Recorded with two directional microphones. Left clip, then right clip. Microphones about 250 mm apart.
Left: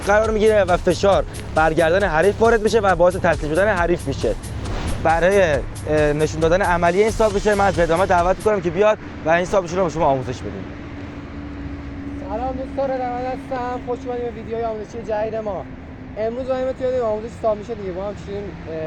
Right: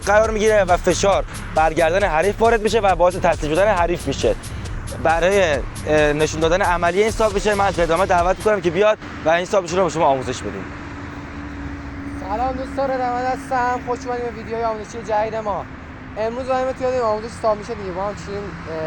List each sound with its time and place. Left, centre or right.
0.0 s speech: centre
5.0 s speech: centre
12.7 s speech: centre
14.6 s speech: centre